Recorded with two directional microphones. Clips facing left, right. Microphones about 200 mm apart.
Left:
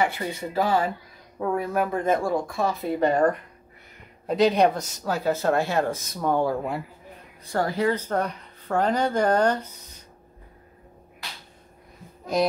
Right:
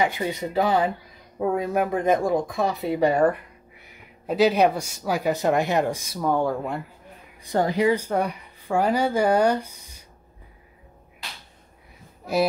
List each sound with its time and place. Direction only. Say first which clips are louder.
0.0 s speech: right 2 dB; 15° right (ahead or behind)
6.2 s speech: even; centre (ahead or behind)
7.4 s speech: right 3 dB; 20° right (ahead or behind)
12.3 s speech: right 1 dB; 5° right (ahead or behind)